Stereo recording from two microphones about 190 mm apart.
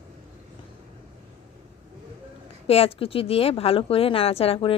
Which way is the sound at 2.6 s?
30° left (ahead or behind).